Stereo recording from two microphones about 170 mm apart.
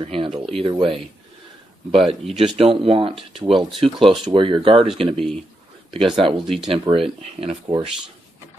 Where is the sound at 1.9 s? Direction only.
30° right (ahead or behind).